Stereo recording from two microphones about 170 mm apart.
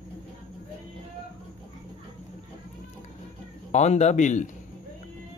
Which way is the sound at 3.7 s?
40° left (ahead or behind).